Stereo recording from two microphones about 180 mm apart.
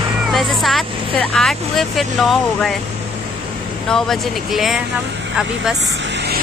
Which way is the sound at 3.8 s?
Centre (ahead or behind).